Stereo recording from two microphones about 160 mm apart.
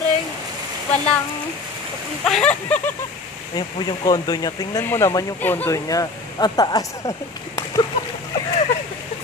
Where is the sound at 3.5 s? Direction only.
25° left (ahead or behind).